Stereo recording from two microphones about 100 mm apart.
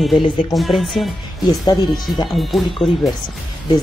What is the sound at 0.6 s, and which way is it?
Speech, centre (ahead or behind).